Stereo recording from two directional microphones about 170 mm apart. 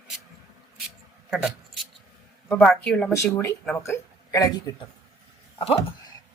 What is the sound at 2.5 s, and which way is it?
Speech, 5° left (ahead or behind).